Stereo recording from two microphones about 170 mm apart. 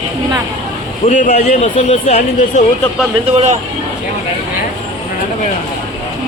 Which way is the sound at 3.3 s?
40° right (ahead or behind).